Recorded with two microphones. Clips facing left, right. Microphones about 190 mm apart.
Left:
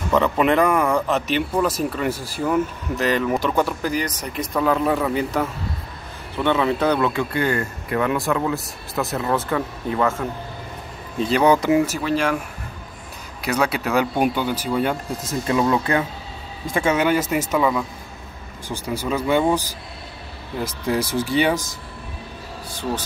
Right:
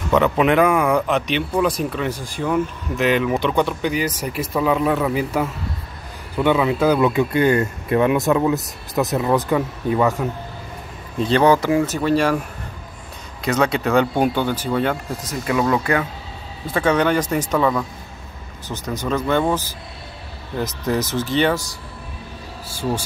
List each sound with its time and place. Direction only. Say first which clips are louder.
0.1 s a man's voice: right 2 dB; centre (ahead or behind)
7.1 s speech: right 5 dB; 20° right (ahead or behind)
11.1 s speech: right 2 dB; 5° left (ahead or behind)
11.5 s speech: even; 20° left (ahead or behind); by 12.4 s centre (ahead or behind)
13.5 s speech: right 3 dB; 10° left (ahead or behind)
16.7 s speech: right 1 dB; 10° left (ahead or behind)
20.6 s speech: even; 10° left (ahead or behind)
22.7 s speech: right 3 dB; 10° right (ahead or behind)